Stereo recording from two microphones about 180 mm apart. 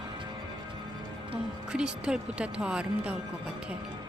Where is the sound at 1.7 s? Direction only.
5° right (ahead or behind).